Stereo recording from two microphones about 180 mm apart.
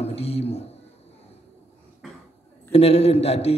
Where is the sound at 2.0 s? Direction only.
Centre (ahead or behind).